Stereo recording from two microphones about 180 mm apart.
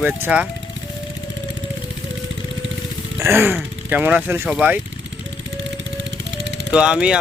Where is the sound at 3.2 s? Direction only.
15° right (ahead or behind).